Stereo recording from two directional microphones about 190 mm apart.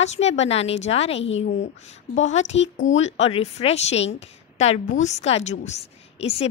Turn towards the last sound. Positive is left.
turn(degrees=35)  # may be behind; listen again after turning